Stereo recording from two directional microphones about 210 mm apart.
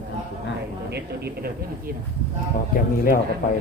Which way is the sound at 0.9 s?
50° right (ahead or behind).